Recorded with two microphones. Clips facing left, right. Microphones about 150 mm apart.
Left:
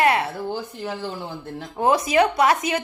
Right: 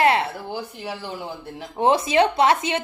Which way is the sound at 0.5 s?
10° right (ahead or behind).